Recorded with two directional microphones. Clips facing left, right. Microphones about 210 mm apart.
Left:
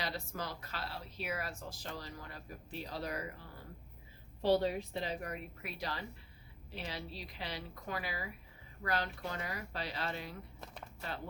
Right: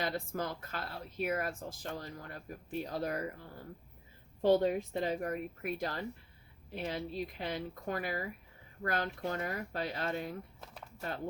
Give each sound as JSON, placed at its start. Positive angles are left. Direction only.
{"t": 0.0, "sound": "speech", "side_deg": -50}
{"t": 4.4, "sound": "speech", "side_deg": -45}